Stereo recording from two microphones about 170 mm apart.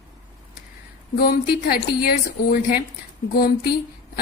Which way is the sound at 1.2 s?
65° left (ahead or behind).